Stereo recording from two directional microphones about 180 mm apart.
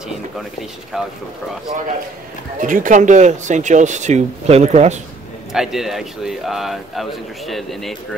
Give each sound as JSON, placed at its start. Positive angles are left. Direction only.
{"t": 0.4, "sound": "speech", "side_deg": 0}
{"t": 2.6, "sound": "speech", "side_deg": -45}
{"t": 5.5, "sound": "speech", "side_deg": 0}